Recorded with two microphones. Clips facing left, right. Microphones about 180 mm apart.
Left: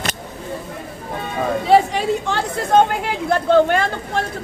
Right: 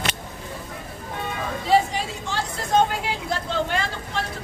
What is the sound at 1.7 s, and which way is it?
Speech, 60° left (ahead or behind).